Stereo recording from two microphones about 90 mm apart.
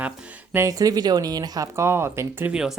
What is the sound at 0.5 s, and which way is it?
Speech, 40° right (ahead or behind).